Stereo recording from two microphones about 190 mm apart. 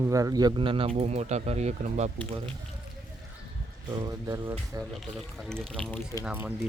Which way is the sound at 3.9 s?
20° right (ahead or behind).